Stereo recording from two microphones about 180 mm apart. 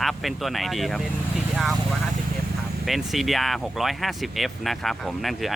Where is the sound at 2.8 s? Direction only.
Centre (ahead or behind).